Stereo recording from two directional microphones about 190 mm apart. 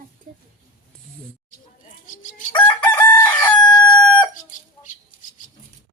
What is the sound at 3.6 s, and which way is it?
Crowing, 20° left (ahead or behind).